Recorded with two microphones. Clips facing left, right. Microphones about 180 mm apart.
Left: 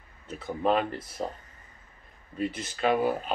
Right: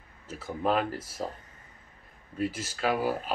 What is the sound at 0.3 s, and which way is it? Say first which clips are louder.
Speech: left 2 dB; 5° right (ahead or behind).